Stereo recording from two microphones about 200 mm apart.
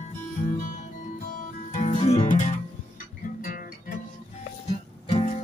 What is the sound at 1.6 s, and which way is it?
Music, 30° left (ahead or behind).